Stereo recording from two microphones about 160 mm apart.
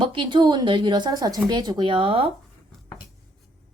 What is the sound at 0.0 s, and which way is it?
Speech, 30° right (ahead or behind).